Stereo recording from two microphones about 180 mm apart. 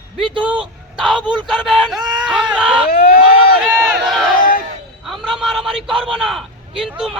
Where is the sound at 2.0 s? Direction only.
20° right (ahead or behind).